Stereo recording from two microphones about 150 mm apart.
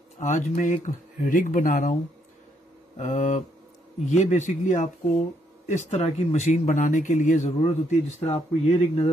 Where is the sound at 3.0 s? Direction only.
55° left (ahead or behind).